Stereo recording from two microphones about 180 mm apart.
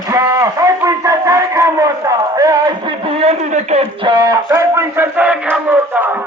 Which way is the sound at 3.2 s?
35° right (ahead or behind).